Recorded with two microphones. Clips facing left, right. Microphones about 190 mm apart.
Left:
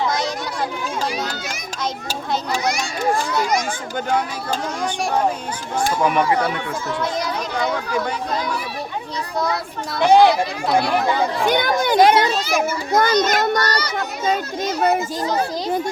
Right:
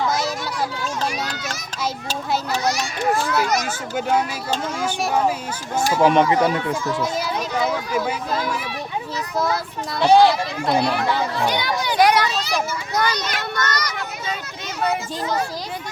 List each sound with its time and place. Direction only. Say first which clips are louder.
2.0 s a child's voice: even; 15° left (ahead or behind)
6.1 s speech: right 3 dB; 25° right (ahead or behind)
7.0 s speech: even; 5° right (ahead or behind)
10.0 s a child's voice: left 1 dB; 15° left (ahead or behind)
10.7 s speech: even; centre (ahead or behind)
11.4 s a child's voice: left 4 dB; 50° left (ahead or behind)
11.9 s speech: left 3 dB; 25° left (ahead or behind)
12.6 s a child's voice: left 5 dB; 50° left (ahead or behind)